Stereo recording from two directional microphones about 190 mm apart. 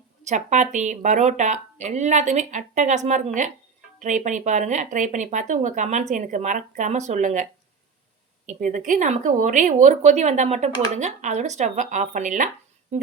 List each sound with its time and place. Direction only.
0.3 s speech: 40° right (ahead or behind)
8.4 s speech: 45° right (ahead or behind)